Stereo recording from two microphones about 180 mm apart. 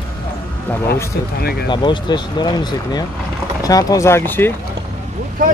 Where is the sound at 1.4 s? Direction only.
60° left (ahead or behind).